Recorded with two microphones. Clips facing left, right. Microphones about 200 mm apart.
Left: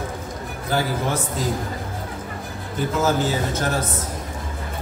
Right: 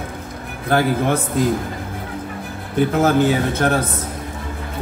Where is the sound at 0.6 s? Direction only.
60° right (ahead or behind).